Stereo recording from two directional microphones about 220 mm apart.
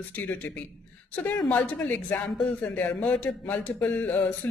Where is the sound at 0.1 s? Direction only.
5° left (ahead or behind).